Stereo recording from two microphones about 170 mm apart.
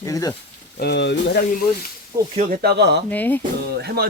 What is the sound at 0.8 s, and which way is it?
Speech, 80° left.